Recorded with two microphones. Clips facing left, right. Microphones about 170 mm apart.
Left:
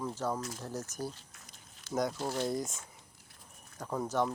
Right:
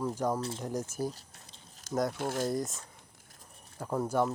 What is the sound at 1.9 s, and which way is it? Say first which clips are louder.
Speech: right 2 dB; centre (ahead or behind).